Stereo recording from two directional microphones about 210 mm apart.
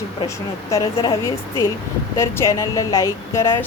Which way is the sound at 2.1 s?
15° left (ahead or behind).